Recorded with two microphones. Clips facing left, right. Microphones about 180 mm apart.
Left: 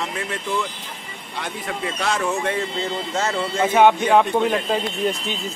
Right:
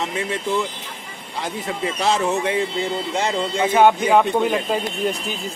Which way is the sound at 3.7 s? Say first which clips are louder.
Even; centre (ahead or behind).